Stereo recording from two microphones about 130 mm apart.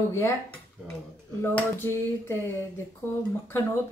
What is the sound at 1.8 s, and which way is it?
Dishes, 20° left (ahead or behind).